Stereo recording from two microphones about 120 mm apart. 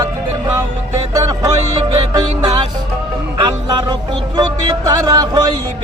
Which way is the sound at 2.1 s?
35° right (ahead or behind).